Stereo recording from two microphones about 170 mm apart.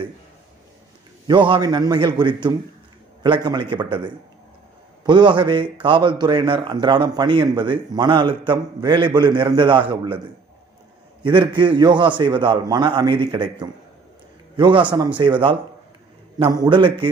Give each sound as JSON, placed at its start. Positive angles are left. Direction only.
{"t": 1.2, "sound": "a man's voice", "side_deg": -30}
{"t": 11.2, "sound": "a man's voice", "side_deg": -30}